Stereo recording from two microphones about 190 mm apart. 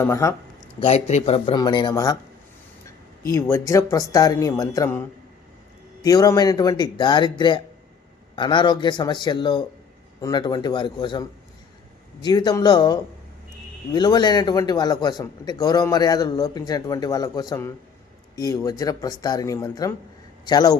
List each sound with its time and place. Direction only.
0.0 s speech: 15° left (ahead or behind)
0.8 s speech: 35° left (ahead or behind)
3.2 s speech: 15° left (ahead or behind)